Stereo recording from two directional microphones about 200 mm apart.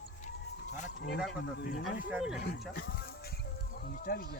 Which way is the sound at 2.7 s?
50° left (ahead or behind).